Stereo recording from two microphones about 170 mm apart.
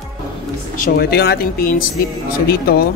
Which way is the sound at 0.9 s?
70° left (ahead or behind).